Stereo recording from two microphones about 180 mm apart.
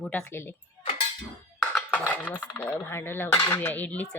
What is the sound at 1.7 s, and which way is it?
Speech, 10° left (ahead or behind).